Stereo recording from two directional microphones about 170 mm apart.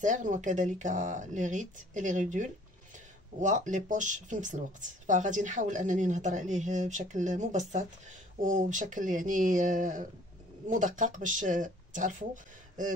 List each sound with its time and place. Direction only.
0.0 s speech: 45° right (ahead or behind)